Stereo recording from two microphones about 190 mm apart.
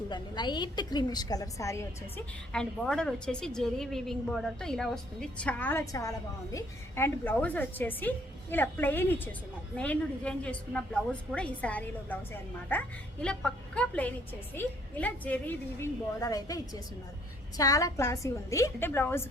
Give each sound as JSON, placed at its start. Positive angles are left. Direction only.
{"t": 0.1, "sound": "a woman's voice", "side_deg": 25}
{"t": 2.5, "sound": "a woman's voice", "side_deg": 5}
{"t": 17.6, "sound": "a woman's voice", "side_deg": 20}